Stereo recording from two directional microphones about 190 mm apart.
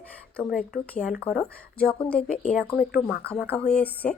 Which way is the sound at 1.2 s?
5° left (ahead or behind).